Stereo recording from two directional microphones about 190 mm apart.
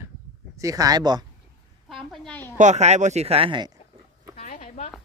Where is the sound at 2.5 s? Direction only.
40° right (ahead or behind).